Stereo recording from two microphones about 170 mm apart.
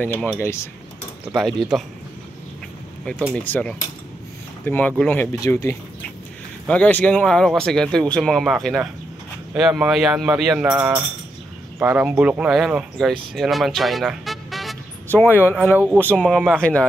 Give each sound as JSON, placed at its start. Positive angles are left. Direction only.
{"t": 0.0, "sound": "speech", "side_deg": 10}
{"t": 1.3, "sound": "speech", "side_deg": 0}
{"t": 3.1, "sound": "speech", "side_deg": 10}
{"t": 10.7, "sound": "speech", "side_deg": -15}
{"t": 15.1, "sound": "speech", "side_deg": 10}
{"t": 15.8, "sound": "speech", "side_deg": -10}